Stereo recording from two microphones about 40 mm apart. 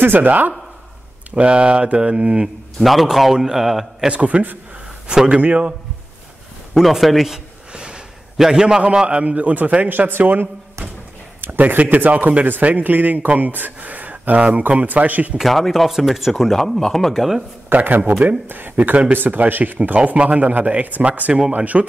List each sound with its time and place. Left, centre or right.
0.0 s speech: right
1.3 s mantra: right
2.8 s speech: centre
4.1 s a man's voice: right
5.0 s a man's voice: right
6.7 s speech: centre
7.3 s a sound: right
8.4 s mantra: centre
8.8 s a man's voice: right
15.4 s speech: centre
17.1 s speech: centre
17.7 s speech: right
19.1 s a man's voice: right